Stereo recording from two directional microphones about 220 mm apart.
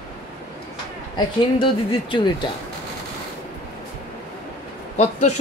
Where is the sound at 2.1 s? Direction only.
20° left (ahead or behind).